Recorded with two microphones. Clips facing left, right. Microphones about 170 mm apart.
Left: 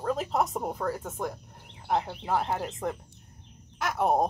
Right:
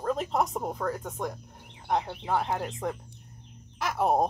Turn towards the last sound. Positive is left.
turn(degrees=0)  # may be behind; listen again after turning